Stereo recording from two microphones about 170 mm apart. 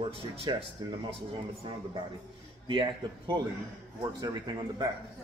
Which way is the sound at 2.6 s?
30° right (ahead or behind).